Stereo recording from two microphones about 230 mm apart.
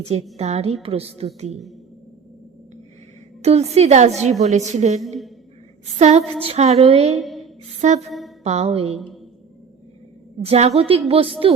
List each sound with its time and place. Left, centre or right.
0.3 s a woman's voice: right
3.4 s a woman's voice: right
7.2 s a sound: centre
7.8 s a woman's voice: right
10.4 s a woman's voice: right